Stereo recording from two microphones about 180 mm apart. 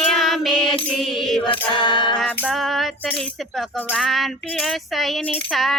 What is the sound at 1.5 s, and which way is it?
Mantra, 25° left (ahead or behind).